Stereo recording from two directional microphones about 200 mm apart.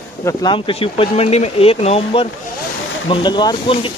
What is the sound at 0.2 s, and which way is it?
Speech, 15° left (ahead or behind).